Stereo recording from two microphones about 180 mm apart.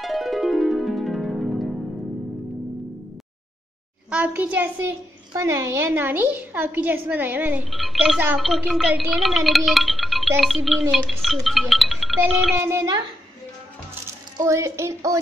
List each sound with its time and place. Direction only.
0.0 s music: centre (ahead or behind)
4.1 s a child's voice: 5° right (ahead or behind)
12.6 s a sound: 15° right (ahead or behind)
14.4 s a woman's voice: 15° right (ahead or behind)